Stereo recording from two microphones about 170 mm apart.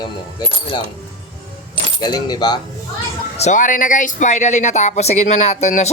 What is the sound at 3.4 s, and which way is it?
Speech, 45° left (ahead or behind).